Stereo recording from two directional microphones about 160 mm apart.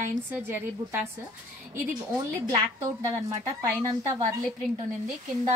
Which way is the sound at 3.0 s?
20° right (ahead or behind).